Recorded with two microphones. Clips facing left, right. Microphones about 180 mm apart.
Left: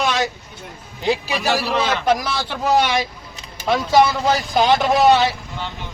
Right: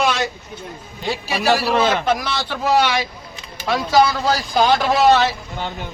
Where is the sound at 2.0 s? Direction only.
10° left (ahead or behind).